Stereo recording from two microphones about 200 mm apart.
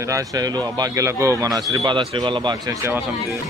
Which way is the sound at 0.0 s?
15° right (ahead or behind).